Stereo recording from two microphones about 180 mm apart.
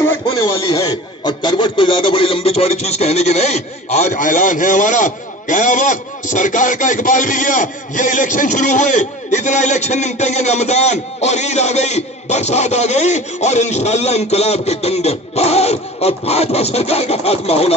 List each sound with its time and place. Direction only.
0.7 s a man's voice: 25° left (ahead or behind)